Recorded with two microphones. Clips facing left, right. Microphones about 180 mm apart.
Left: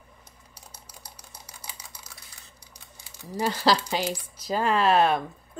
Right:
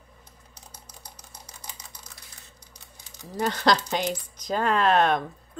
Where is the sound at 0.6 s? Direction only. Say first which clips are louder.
Even; 10° left (ahead or behind).